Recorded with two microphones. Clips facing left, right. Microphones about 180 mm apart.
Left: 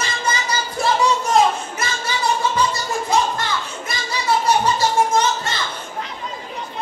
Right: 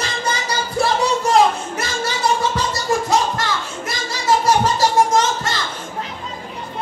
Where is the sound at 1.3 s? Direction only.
75° right (ahead or behind).